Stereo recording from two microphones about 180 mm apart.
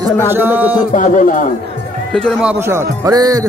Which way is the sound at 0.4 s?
10° right (ahead or behind).